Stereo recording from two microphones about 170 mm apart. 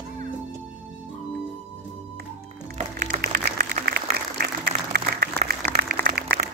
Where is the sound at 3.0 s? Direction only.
65° right (ahead or behind).